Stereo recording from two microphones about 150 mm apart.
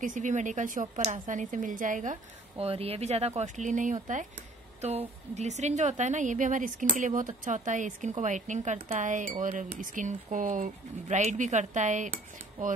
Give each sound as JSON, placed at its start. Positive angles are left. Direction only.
{"t": 0.0, "sound": "a woman's voice", "side_deg": -60}
{"t": 2.5, "sound": "a woman's voice", "side_deg": -40}